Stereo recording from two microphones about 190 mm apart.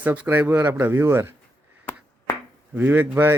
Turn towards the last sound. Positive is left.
turn(degrees=-10)  # may be behind; listen again after turning